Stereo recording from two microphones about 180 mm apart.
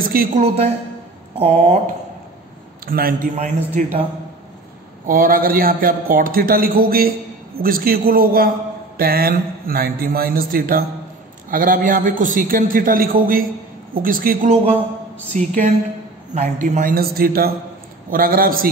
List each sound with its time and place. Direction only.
0.0 s a man's voice: 55° right (ahead or behind)
1.4 s a man's voice: 35° right (ahead or behind)
2.9 s a man's voice: 55° right (ahead or behind)
5.0 s a man's voice: 50° right (ahead or behind)
14.5 s a man's voice: 30° right (ahead or behind)
15.3 s a man's voice: 45° right (ahead or behind)